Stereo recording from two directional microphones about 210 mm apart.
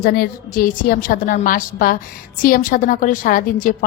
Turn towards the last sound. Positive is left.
turn(degrees=40)  # may be behind; listen again after turning